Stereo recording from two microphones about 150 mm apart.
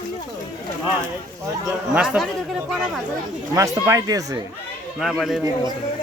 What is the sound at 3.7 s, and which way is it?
Speech, 20° right (ahead or behind).